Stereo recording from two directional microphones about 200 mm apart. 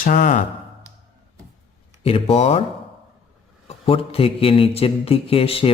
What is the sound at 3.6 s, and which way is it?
Speech, 30° left (ahead or behind).